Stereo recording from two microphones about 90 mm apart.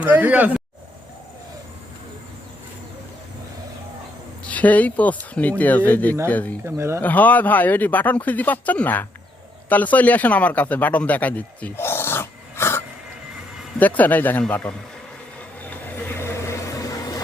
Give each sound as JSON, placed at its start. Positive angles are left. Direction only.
{"t": 0.0, "sound": "speech", "side_deg": -15}
{"t": 4.4, "sound": "speech", "side_deg": 15}
{"t": 6.7, "sound": "speech", "side_deg": -30}
{"t": 7.0, "sound": "speech", "side_deg": 20}
{"t": 13.7, "sound": "speech", "side_deg": 20}
{"t": 16.0, "sound": "a sound", "side_deg": 30}